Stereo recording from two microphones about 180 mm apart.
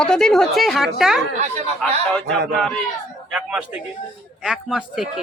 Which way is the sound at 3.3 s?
5° right (ahead or behind).